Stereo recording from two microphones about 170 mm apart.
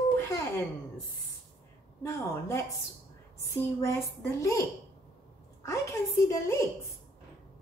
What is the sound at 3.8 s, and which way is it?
Speech, 20° left (ahead or behind).